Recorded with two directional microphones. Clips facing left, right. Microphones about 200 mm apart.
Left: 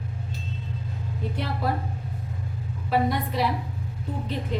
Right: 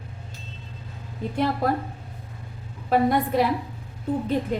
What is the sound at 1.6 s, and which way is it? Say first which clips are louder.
Speech: right 2 dB; 45° right (ahead or behind).